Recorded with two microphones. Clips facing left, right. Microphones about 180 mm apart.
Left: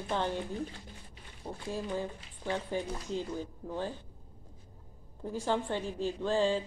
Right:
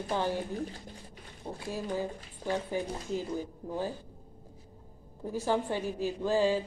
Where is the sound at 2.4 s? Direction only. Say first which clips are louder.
Right 2 dB; 45° right (ahead or behind).